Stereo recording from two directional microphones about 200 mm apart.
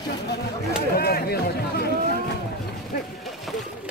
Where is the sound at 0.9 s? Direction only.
50° left (ahead or behind).